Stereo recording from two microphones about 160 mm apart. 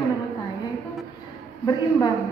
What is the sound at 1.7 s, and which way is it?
Speech, 25° left (ahead or behind).